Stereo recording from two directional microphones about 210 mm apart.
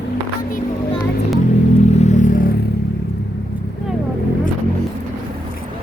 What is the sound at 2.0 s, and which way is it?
Vehicle, 35° left (ahead or behind).